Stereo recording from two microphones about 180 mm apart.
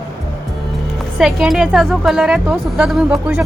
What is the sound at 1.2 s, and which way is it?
Speech, centre (ahead or behind).